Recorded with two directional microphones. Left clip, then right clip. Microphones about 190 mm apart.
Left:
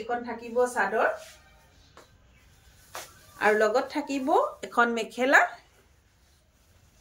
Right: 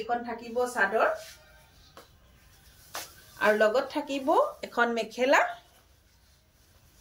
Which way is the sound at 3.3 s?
25° left (ahead or behind).